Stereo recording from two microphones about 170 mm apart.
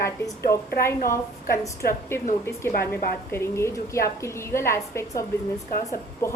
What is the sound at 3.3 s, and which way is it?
A woman's voice, 15° left (ahead or behind).